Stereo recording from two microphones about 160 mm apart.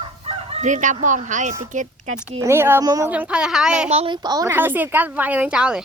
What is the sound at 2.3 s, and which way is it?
A woman's voice, 15° right (ahead or behind).